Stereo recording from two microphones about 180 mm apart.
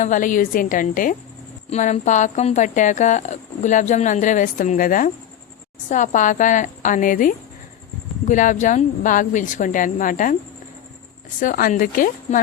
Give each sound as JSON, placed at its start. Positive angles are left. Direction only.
{"t": 0.0, "sound": "speech", "side_deg": 45}
{"t": 11.3, "sound": "speech", "side_deg": 50}